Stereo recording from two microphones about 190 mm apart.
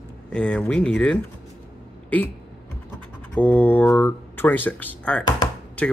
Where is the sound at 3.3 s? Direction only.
10° left (ahead or behind).